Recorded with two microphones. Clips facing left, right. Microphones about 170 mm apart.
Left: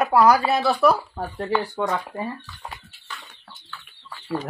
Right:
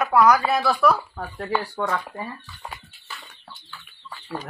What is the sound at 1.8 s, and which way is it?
Speech, 15° left (ahead or behind).